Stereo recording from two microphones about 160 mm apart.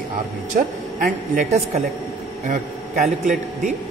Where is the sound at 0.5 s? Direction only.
60° right (ahead or behind).